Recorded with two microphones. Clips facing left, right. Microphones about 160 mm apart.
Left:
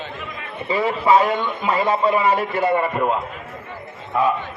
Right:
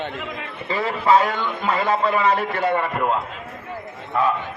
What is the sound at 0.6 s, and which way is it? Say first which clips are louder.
A man's voice: left 2 dB; 10° left (ahead or behind).